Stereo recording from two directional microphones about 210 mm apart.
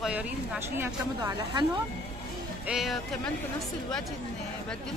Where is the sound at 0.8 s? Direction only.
15° right (ahead or behind).